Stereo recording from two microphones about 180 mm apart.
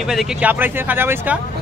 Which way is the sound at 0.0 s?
Centre (ahead or behind).